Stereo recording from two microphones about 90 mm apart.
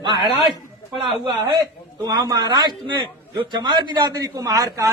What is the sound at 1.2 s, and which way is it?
A man's voice, 45° right (ahead or behind).